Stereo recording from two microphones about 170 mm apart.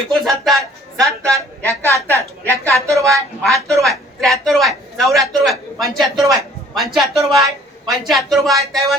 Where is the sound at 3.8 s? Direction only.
Centre (ahead or behind).